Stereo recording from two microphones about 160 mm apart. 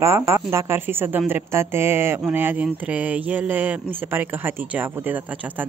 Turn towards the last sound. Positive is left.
turn(degrees=-10)  # may be behind; listen again after turning